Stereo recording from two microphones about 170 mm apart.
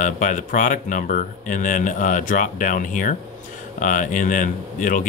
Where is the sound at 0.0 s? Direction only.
45° left (ahead or behind).